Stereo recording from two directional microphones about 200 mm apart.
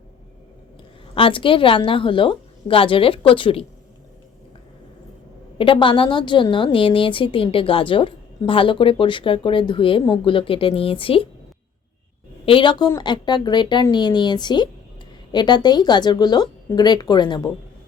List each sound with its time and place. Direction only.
1.1 s a woman's voice: 25° left (ahead or behind)
5.5 s a woman's voice: 25° left (ahead or behind)
12.5 s a woman's voice: 25° left (ahead or behind)